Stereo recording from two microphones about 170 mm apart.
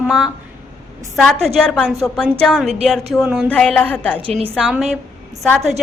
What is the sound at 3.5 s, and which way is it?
Speech, 5° left (ahead or behind).